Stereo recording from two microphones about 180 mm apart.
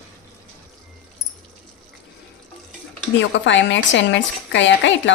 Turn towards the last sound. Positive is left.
turn(degrees=90)